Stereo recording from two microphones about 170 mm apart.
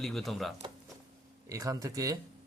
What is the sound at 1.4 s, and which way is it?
Speech, 20° right (ahead or behind).